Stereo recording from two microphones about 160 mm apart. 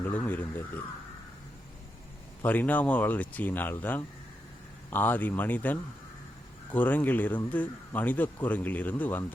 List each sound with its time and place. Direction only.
0.0 s speech: 10° left (ahead or behind)
2.4 s speech: 10° left (ahead or behind)